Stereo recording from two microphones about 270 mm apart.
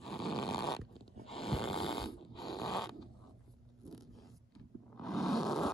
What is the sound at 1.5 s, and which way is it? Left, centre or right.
Snoring, centre.